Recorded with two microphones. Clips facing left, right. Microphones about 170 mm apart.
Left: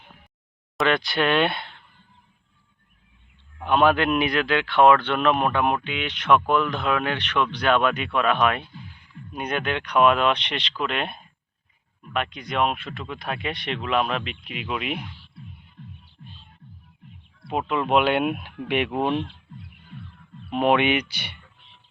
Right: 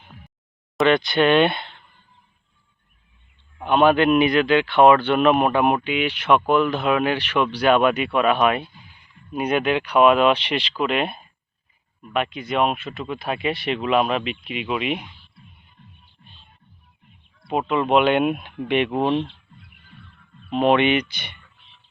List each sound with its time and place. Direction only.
0.8 s speech: centre (ahead or behind)
3.6 s speech: centre (ahead or behind)
17.5 s speech: centre (ahead or behind)
19.1 s speech: 30° right (ahead or behind)
20.5 s speech: 10° left (ahead or behind)